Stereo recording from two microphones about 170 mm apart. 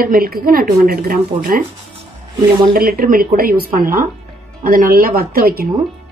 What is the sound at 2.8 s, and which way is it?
Speech, 60° right (ahead or behind).